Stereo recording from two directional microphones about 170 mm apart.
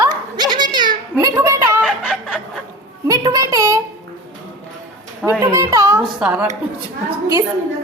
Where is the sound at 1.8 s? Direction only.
5° left (ahead or behind).